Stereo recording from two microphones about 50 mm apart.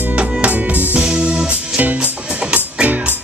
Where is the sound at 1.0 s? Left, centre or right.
Right.